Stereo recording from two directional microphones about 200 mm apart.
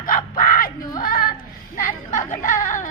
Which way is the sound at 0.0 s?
45° left (ahead or behind).